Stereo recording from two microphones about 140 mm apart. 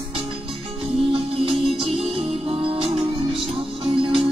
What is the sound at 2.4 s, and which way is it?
Music, 40° right (ahead or behind).